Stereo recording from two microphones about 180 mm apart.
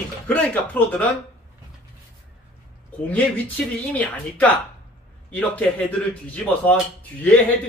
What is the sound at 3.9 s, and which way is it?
A man's voice, 10° left (ahead or behind).